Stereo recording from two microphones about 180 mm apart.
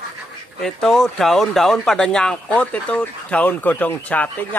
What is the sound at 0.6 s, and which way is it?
Speech, 5° left (ahead or behind).